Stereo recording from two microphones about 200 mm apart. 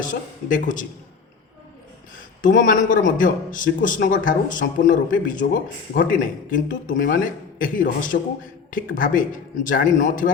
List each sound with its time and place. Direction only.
0.0 s a man's voice: 40° left (ahead or behind)
2.6 s a man's voice: 40° left (ahead or behind)